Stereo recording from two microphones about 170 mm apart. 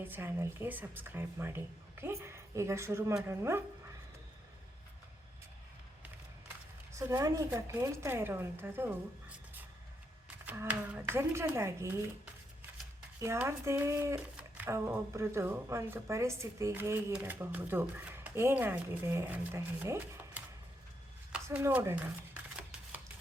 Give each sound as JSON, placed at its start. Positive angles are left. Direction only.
{"t": 0.0, "sound": "speech", "side_deg": -10}
{"t": 6.9, "sound": "speech", "side_deg": -20}
{"t": 13.1, "sound": "speech", "side_deg": -15}
{"t": 21.4, "sound": "speech", "side_deg": -15}